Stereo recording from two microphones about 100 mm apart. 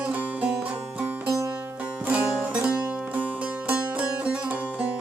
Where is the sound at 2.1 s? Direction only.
10° right (ahead or behind).